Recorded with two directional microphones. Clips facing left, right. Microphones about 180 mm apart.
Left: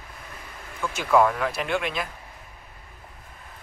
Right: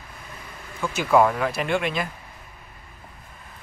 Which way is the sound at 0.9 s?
5° right (ahead or behind).